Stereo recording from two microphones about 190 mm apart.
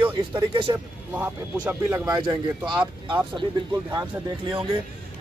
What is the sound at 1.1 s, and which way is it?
Speech, 10° right (ahead or behind).